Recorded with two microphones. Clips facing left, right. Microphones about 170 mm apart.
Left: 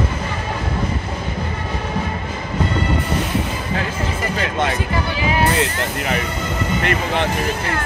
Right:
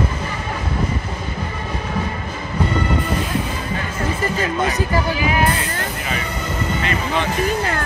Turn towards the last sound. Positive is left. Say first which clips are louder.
# left 2 dB
turn(degrees=60)  # may be behind; listen again after turning